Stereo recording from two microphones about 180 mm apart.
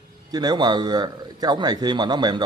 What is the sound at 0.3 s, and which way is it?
Speech, 20° right (ahead or behind).